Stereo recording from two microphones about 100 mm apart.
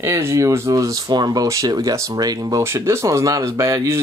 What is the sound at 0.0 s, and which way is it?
Speech, 30° right (ahead or behind).